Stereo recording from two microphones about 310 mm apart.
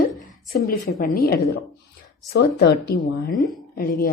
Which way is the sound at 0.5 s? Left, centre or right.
Left.